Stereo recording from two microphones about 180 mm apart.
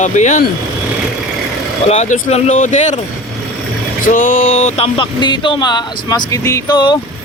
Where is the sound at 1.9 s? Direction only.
40° left (ahead or behind).